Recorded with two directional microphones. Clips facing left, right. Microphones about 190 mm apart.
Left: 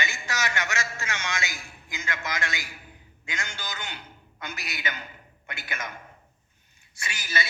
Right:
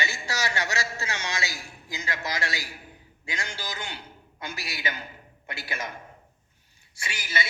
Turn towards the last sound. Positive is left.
turn(degrees=-25)  # may be behind; listen again after turning